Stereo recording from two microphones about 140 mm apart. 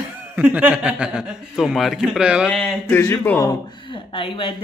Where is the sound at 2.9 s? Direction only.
15° left (ahead or behind).